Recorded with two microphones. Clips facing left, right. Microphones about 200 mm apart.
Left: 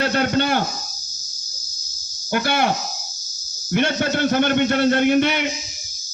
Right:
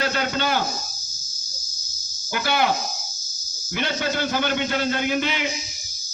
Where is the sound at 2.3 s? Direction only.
55° left (ahead or behind).